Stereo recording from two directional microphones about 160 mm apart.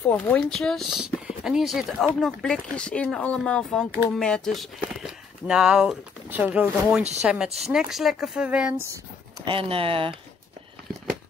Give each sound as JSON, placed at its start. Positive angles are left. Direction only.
{"t": 0.0, "sound": "speech", "side_deg": 10}
{"t": 8.8, "sound": "a sound", "side_deg": -20}
{"t": 9.5, "sound": "speech", "side_deg": -35}